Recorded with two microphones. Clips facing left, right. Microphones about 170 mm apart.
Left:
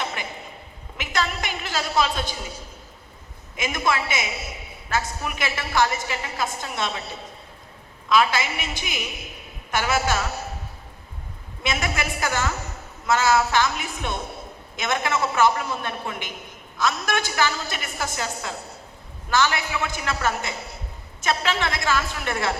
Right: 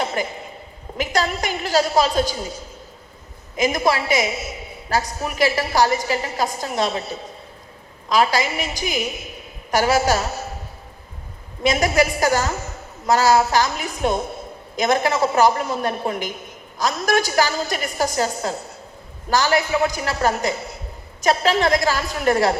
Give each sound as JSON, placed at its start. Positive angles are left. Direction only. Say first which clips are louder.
{"t": 0.0, "sound": "a sound", "louder": "right 7 dB", "side_deg": -40}
{"t": 0.9, "sound": "a woman's voice", "louder": "right 5 dB", "side_deg": -40}
{"t": 3.6, "sound": "a woman's voice", "louder": "right 6 dB", "side_deg": -40}
{"t": 8.1, "sound": "a woman's voice", "louder": "right 2 dB", "side_deg": -40}
{"t": 11.6, "sound": "a woman's voice", "louder": "right 9 dB", "side_deg": -40}